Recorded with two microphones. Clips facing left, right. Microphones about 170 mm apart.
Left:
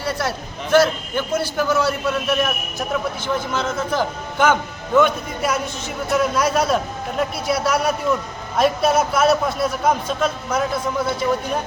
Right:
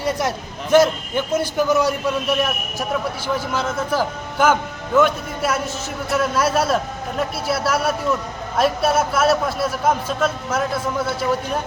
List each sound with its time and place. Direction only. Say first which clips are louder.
0.0 s a man's voice: right 2 dB; 15° right (ahead or behind)